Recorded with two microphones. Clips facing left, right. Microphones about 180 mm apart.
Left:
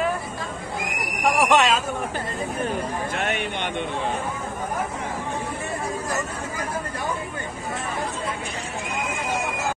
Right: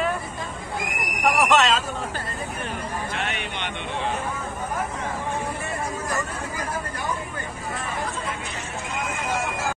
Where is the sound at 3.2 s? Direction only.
50° left (ahead or behind).